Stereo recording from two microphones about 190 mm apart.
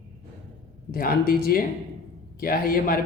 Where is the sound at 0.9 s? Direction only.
50° left (ahead or behind).